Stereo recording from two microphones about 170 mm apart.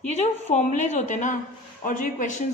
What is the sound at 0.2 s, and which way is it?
Speech, 45° left (ahead or behind).